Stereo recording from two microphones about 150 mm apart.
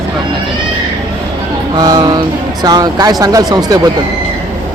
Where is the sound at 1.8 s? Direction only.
25° right (ahead or behind).